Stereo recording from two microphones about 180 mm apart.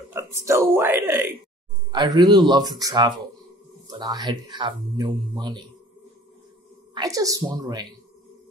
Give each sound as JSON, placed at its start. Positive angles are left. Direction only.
{"t": 0.1, "sound": "speech", "side_deg": -15}
{"t": 1.9, "sound": "speech", "side_deg": -25}
{"t": 6.9, "sound": "speech", "side_deg": -20}